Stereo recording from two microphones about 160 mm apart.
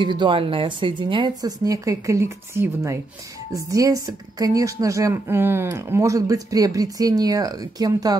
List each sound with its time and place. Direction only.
0.0 s a woman's voice: 30° right (ahead or behind)